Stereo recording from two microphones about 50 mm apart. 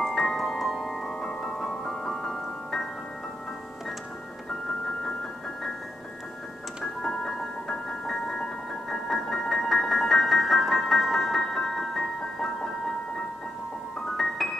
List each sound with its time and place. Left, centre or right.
0.0 s music: centre
7.0 s music: centre
14.1 s piano: centre